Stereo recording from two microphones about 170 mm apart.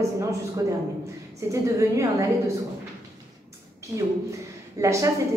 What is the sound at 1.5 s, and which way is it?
Speech, 20° right (ahead or behind).